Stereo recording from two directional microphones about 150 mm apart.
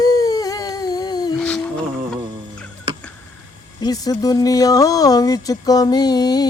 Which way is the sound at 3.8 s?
25° left (ahead or behind).